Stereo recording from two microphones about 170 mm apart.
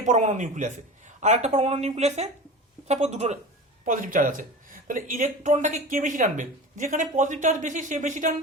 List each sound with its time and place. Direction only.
0.0 s speech: 45° right (ahead or behind)
3.8 s speech: 55° right (ahead or behind)